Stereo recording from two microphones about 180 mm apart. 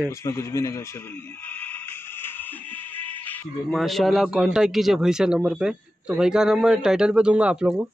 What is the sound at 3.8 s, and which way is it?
A man's voice, centre (ahead or behind).